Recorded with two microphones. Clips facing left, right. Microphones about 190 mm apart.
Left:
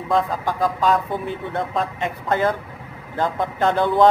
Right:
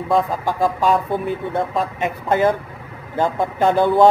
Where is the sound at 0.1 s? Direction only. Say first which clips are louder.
Right 2 dB; 10° right (ahead or behind).